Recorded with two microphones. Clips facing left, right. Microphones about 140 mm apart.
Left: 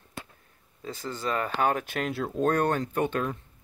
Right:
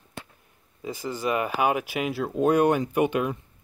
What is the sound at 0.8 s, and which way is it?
Speech, 10° right (ahead or behind).